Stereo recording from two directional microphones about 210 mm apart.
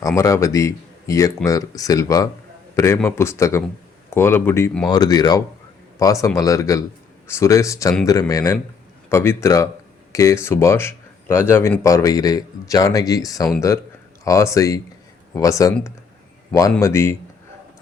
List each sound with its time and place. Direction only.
0.2 s speech: 15° left (ahead or behind)
4.9 s a man's voice: 20° left (ahead or behind)